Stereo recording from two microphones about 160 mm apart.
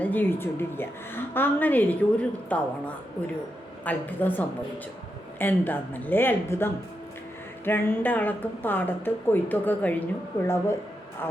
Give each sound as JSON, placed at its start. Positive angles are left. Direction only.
{"t": 0.0, "sound": "a woman's voice", "side_deg": 10}